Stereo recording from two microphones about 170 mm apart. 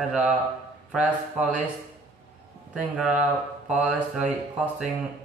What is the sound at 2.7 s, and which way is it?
Speech, 5° right (ahead or behind).